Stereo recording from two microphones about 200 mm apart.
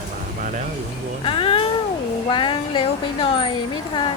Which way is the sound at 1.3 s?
25° left (ahead or behind).